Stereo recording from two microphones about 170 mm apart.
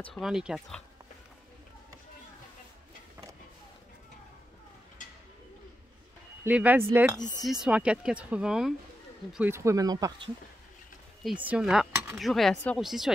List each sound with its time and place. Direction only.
0.1 s speech: centre (ahead or behind)
6.4 s speech: 10° right (ahead or behind)
7.2 s speech: 25° left (ahead or behind)
7.4 s speech: 5° right (ahead or behind); by 10.3 s 25° right (ahead or behind)
11.2 s speech: 5° right (ahead or behind)